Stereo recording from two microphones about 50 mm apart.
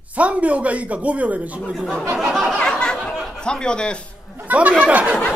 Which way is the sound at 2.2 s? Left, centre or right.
Centre.